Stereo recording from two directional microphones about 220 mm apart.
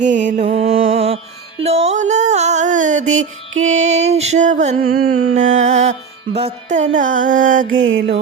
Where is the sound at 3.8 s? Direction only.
30° right (ahead or behind).